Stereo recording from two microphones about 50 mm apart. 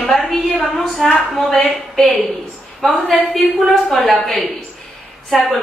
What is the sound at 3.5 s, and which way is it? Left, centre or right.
Speech, centre.